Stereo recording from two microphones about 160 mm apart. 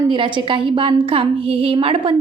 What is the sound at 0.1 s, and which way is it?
A woman's voice, 30° right (ahead or behind).